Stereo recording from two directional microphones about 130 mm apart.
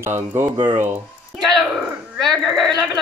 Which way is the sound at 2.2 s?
Centre (ahead or behind).